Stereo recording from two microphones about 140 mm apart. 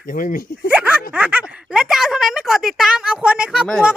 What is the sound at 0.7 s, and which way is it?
A woman's voice, 10° right (ahead or behind).